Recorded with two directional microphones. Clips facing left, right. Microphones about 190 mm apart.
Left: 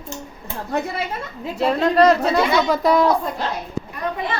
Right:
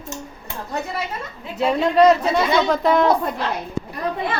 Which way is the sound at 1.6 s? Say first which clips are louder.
Even; 5° right (ahead or behind).